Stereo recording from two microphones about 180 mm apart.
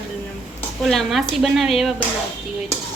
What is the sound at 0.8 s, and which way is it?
Speech, centre (ahead or behind).